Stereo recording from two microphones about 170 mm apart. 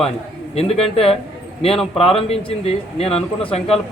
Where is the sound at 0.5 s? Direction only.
35° left (ahead or behind).